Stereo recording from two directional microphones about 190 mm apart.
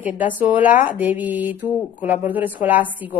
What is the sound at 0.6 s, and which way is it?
Speech, 40° left (ahead or behind).